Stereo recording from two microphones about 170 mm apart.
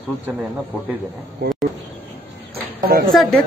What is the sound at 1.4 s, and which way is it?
Speech, 75° right (ahead or behind).